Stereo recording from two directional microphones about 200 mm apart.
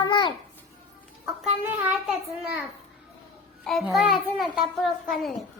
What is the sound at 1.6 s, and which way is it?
Speech, 5° right (ahead or behind).